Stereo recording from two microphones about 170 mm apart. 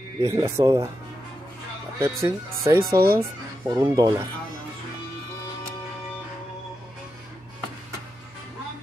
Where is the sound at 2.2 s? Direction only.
15° right (ahead or behind).